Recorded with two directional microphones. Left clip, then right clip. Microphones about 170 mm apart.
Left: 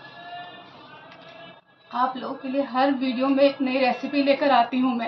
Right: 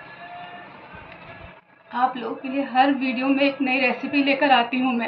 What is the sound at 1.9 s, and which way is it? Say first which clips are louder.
A woman's voice: right 2 dB; 20° left (ahead or behind).